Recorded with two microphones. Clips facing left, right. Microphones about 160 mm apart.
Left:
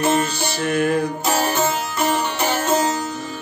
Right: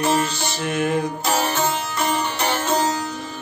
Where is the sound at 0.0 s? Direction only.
Centre (ahead or behind).